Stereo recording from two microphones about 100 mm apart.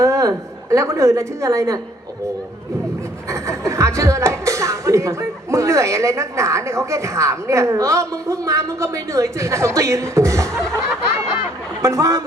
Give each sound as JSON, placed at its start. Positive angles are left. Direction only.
{"t": 0.0, "sound": "a woman's voice", "side_deg": -30}
{"t": 3.2, "sound": "speech", "side_deg": -30}
{"t": 11.8, "sound": "speech", "side_deg": -30}